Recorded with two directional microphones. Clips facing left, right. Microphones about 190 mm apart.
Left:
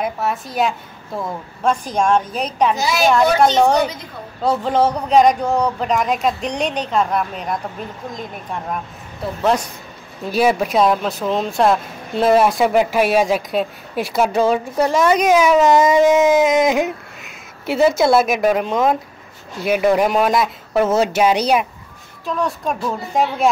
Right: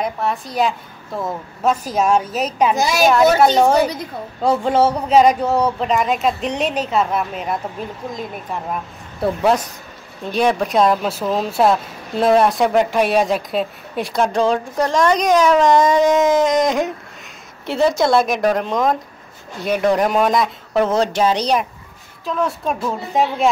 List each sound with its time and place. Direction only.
0.0 s speech: centre (ahead or behind)
2.8 s a woman's voice: 45° right (ahead or behind)
3.1 s speech: 5° right (ahead or behind)
10.2 s speech: 5° left (ahead or behind)